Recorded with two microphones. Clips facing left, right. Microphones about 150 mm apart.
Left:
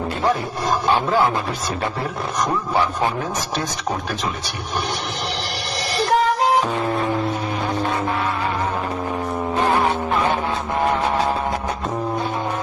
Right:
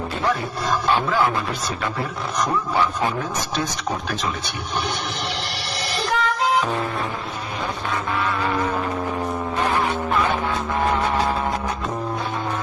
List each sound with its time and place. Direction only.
6.1 s music: 40° left (ahead or behind)